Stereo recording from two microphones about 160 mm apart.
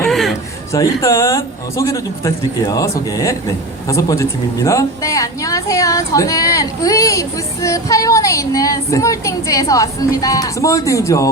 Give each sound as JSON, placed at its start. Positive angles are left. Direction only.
{"t": 0.1, "sound": "chuckle", "side_deg": 0}
{"t": 0.7, "sound": "speech", "side_deg": 20}